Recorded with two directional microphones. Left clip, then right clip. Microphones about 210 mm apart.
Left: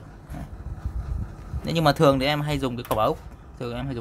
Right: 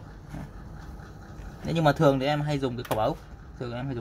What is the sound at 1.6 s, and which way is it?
Speech, 20° left (ahead or behind).